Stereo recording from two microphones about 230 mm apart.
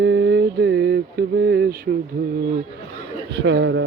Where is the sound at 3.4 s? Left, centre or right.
Right.